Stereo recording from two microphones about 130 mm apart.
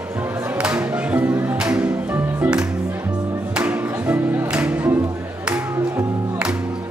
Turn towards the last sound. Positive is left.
turn(degrees=-10)  # may be behind; listen again after turning